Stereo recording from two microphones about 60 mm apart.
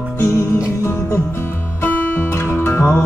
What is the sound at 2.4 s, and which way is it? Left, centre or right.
Music, left.